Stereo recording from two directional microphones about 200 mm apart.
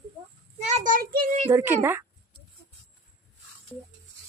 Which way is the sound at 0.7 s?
40° right (ahead or behind).